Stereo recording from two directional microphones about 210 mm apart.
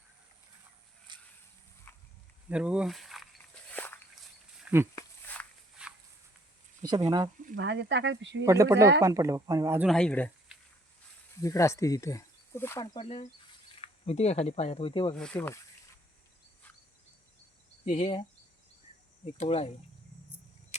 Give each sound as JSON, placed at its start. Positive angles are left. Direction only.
{"t": 1.1, "sound": "a sound", "side_deg": -20}
{"t": 2.5, "sound": "speech", "side_deg": -5}
{"t": 3.7, "sound": "walk", "side_deg": 10}
{"t": 4.6, "sound": "a sound", "side_deg": -10}
{"t": 4.9, "sound": "a sound", "side_deg": 10}
{"t": 5.8, "sound": "walk", "side_deg": -5}
{"t": 7.6, "sound": "speech", "side_deg": -55}
{"t": 8.4, "sound": "speech", "side_deg": -15}
{"t": 9.9, "sound": "speech", "side_deg": 5}
{"t": 15.1, "sound": "speech", "side_deg": 5}
{"t": 17.8, "sound": "speech", "side_deg": 25}